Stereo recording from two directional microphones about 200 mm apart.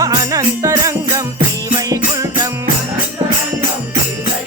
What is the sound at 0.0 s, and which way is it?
Music, 15° right (ahead or behind).